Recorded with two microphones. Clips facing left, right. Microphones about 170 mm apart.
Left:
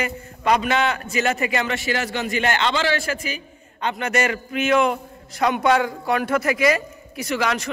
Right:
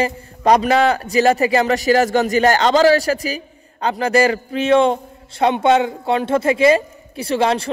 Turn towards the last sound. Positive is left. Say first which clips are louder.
# right 6 dB
turn(degrees=-30)  # may be behind; listen again after turning